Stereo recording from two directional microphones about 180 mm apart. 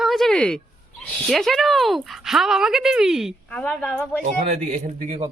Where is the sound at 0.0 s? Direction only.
Centre (ahead or behind).